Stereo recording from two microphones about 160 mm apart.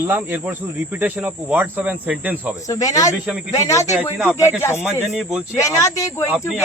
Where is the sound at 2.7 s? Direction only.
20° left (ahead or behind).